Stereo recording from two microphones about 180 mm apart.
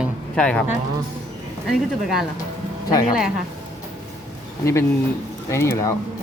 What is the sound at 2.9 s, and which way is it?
Speech, 20° left (ahead or behind).